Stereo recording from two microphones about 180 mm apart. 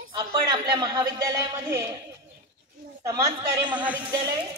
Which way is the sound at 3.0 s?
20° right (ahead or behind).